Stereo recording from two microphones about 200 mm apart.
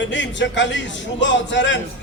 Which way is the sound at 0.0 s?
65° left (ahead or behind).